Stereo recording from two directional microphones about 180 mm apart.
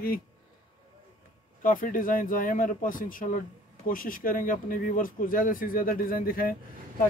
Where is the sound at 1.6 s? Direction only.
50° left (ahead or behind).